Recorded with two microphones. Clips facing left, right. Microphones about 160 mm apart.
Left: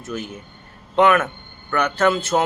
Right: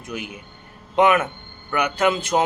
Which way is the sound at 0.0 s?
15° right (ahead or behind).